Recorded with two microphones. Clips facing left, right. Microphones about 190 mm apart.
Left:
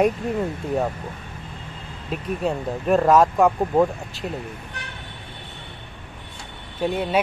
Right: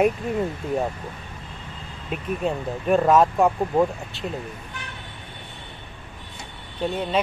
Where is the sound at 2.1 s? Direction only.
Centre (ahead or behind).